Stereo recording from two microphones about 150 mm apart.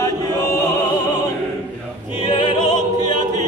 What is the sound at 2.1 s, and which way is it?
Music, 30° left (ahead or behind).